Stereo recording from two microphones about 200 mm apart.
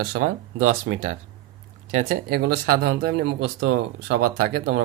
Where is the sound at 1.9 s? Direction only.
45° right (ahead or behind).